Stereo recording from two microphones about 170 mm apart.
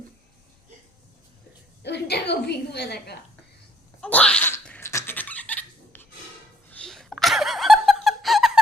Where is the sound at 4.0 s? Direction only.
5° left (ahead or behind).